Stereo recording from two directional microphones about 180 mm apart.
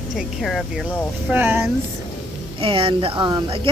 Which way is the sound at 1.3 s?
10° right (ahead or behind).